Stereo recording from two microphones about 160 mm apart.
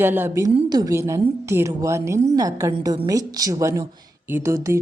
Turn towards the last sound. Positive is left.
turn(degrees=-20)  # may be behind; listen again after turning